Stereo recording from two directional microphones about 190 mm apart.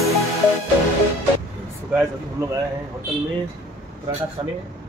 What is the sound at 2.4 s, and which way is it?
Speech, 15° right (ahead or behind).